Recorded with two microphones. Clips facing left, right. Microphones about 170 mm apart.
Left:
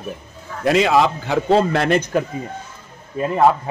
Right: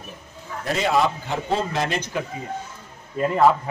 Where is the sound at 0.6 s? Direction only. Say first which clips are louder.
Left 6 dB; 90° left; by 2.2 s 60° left (ahead or behind).